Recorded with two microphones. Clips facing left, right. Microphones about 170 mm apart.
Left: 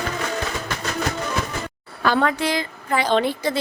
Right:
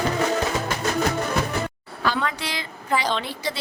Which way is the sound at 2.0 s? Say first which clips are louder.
Left 6 dB; 55° left (ahead or behind).